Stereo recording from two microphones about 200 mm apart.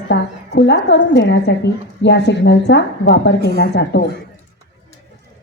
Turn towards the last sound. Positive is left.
turn(degrees=55)  # may be behind; listen again after turning